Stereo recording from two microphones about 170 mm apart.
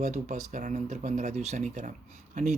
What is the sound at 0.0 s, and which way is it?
Speech, 45° right (ahead or behind).